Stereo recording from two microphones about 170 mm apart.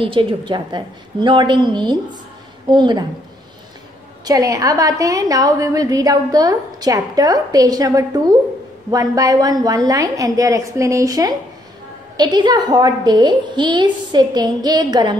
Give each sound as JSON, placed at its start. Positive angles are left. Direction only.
{"t": 0.0, "sound": "a woman's voice", "side_deg": -30}
{"t": 4.2, "sound": "a woman's voice", "side_deg": -20}